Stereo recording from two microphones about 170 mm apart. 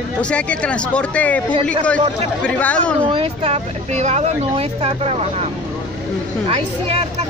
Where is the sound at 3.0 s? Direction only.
35° right (ahead or behind).